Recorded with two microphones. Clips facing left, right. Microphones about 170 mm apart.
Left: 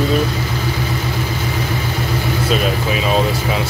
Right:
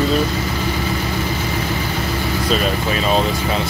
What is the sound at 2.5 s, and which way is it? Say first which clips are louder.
Speech: left 1 dB; 5° left (ahead or behind).